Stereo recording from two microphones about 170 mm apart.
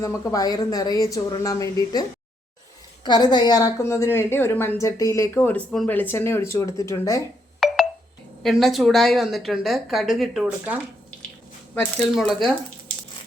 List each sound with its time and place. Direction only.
0.0 s a woman's voice: 20° left (ahead or behind)
7.6 s telephone dialing: centre (ahead or behind)
8.4 s a woman's voice: centre (ahead or behind)
11.7 s a woman's voice: 10° left (ahead or behind)